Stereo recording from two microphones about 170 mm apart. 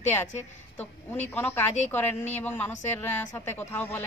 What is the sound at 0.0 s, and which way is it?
A woman's voice, 10° left (ahead or behind).